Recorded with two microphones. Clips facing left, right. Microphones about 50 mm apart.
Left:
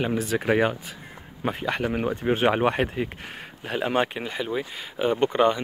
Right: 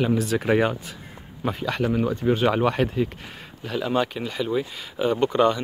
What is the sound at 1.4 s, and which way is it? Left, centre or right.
Speech, left.